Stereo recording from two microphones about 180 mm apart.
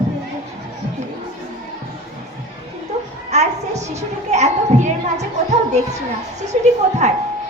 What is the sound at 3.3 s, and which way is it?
A woman's voice, 40° right (ahead or behind).